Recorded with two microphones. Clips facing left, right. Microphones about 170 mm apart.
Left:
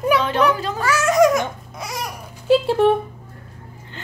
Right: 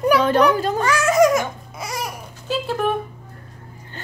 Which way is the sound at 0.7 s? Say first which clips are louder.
Left 2 dB; centre (ahead or behind).